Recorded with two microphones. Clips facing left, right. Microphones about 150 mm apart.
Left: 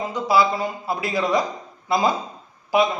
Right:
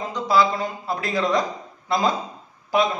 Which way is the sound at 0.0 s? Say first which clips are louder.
Left 1 dB; 10° left (ahead or behind).